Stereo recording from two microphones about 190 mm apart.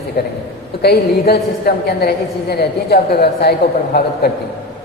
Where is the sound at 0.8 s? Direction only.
55° left (ahead or behind).